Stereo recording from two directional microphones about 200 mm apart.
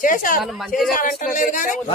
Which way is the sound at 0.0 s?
40° left (ahead or behind).